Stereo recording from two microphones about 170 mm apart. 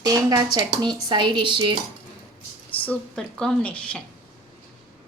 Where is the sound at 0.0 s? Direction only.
20° right (ahead or behind).